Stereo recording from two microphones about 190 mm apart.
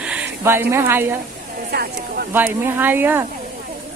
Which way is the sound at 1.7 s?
55° right (ahead or behind).